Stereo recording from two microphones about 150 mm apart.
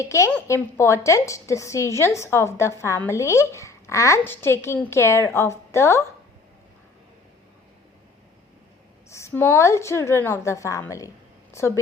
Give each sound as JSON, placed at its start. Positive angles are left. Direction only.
{"t": 0.0, "sound": "a woman's voice", "side_deg": 20}
{"t": 9.0, "sound": "a woman's voice", "side_deg": 20}